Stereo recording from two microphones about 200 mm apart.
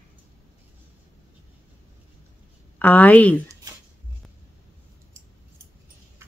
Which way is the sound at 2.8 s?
10° left (ahead or behind).